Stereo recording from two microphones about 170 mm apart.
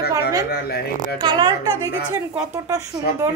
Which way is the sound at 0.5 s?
65° left (ahead or behind).